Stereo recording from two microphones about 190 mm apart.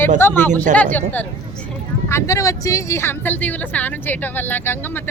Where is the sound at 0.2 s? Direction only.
10° left (ahead or behind).